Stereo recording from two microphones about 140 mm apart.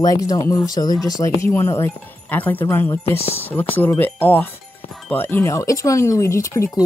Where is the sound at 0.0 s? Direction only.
25° left (ahead or behind).